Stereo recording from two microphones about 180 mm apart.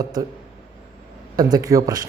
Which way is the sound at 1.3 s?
20° right (ahead or behind).